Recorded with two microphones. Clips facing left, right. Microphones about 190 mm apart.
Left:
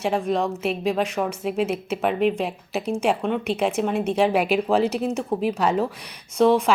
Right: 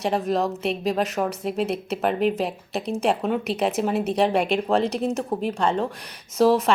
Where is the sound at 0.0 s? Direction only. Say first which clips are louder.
Even; centre (ahead or behind).